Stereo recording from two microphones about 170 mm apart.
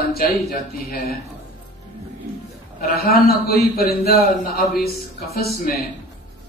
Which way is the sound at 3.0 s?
60° left (ahead or behind).